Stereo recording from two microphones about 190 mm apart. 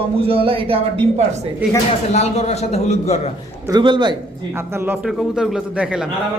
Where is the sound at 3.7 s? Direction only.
25° right (ahead or behind).